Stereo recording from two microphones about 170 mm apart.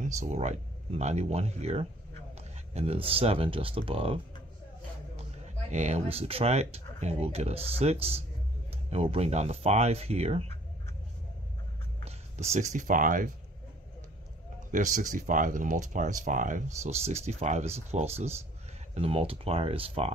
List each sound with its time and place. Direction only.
0.0 s speech: 45° right (ahead or behind)
5.7 s speech: 40° right (ahead or behind)
12.1 s speech: 40° right (ahead or behind)
14.7 s speech: 50° right (ahead or behind)